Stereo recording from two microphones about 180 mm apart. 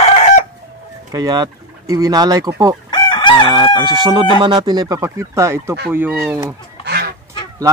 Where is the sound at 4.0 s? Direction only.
30° right (ahead or behind); by 6.3 s 5° right (ahead or behind).